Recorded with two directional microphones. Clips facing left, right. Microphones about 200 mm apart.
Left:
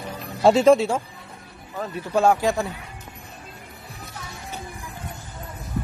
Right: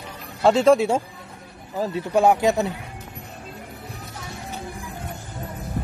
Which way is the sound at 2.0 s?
15° right (ahead or behind).